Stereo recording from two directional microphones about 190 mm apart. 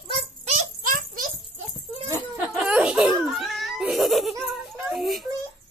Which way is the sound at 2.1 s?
5° right (ahead or behind).